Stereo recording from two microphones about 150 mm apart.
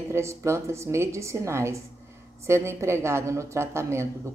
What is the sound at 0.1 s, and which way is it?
A woman's voice, 20° right (ahead or behind).